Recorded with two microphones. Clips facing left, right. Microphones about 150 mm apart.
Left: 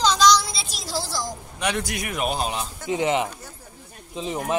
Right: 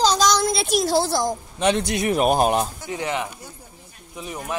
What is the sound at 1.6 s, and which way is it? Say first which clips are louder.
Speech: right 6 dB; 25° right (ahead or behind).